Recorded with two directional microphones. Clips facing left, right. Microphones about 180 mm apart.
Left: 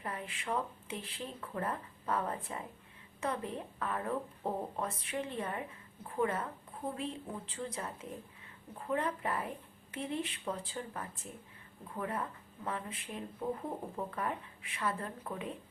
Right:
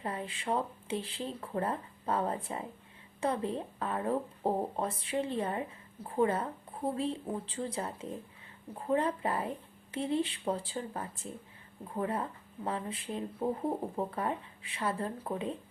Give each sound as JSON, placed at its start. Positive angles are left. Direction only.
{"t": 0.0, "sound": "a woman's voice", "side_deg": -30}